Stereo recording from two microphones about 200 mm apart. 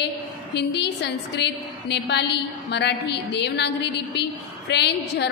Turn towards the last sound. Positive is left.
turn(degrees=60)  # may be behind; listen again after turning